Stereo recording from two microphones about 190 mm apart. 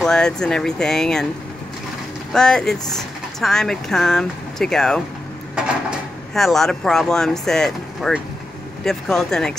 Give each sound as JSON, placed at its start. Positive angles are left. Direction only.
{"t": 0.0, "sound": "speech", "side_deg": 5}
{"t": 2.3, "sound": "speech", "side_deg": 5}